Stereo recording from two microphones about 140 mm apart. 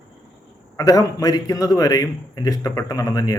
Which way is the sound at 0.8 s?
25° left (ahead or behind).